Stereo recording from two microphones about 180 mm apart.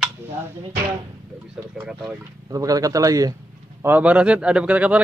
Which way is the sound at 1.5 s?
5° right (ahead or behind).